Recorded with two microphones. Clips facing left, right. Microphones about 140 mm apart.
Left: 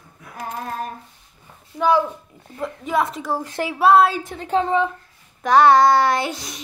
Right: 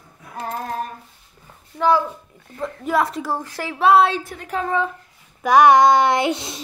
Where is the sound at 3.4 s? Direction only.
20° left (ahead or behind).